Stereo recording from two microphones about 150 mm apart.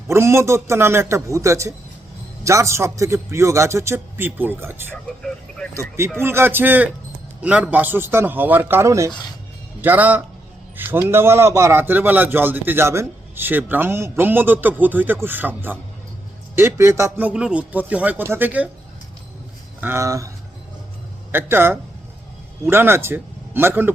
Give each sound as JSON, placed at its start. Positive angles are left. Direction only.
{"t": 0.1, "sound": "a man's voice", "side_deg": -20}
{"t": 6.1, "sound": "a man's voice", "side_deg": -15}
{"t": 19.8, "sound": "a man's voice", "side_deg": -15}
{"t": 21.3, "sound": "a man's voice", "side_deg": -15}